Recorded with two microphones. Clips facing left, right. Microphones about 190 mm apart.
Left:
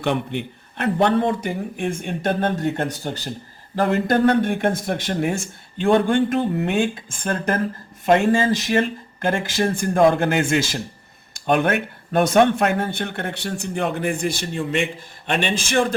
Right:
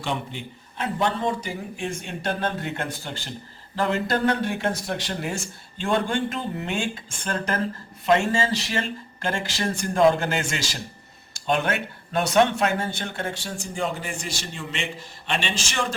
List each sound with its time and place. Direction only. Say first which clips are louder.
0.0 s speech: left 7 dB; 60° left (ahead or behind); by 3.2 s 40° left (ahead or behind)
3.8 s speech: left 5 dB; 55° left (ahead or behind)